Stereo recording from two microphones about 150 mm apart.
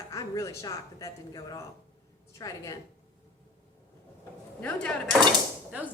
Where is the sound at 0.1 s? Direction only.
20° left (ahead or behind).